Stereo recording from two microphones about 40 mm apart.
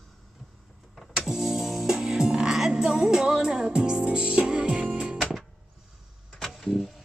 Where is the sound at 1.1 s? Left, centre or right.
Centre.